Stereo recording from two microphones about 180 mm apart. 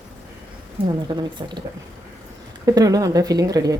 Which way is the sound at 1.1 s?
25° right (ahead or behind).